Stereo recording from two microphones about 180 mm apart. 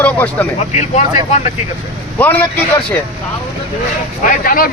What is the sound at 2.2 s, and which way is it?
Speech, 10° left (ahead or behind).